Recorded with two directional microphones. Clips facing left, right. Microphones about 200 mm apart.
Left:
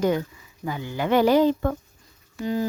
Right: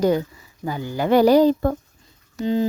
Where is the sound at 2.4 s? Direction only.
25° right (ahead or behind).